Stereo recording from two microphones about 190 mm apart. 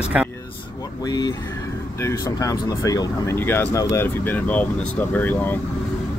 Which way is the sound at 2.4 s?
15° left (ahead or behind).